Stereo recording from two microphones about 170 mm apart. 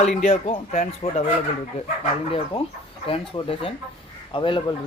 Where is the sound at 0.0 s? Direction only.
40° left (ahead or behind).